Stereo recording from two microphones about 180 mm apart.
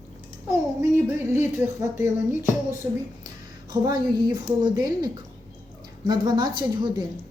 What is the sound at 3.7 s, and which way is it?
A woman's voice, 20° right (ahead or behind).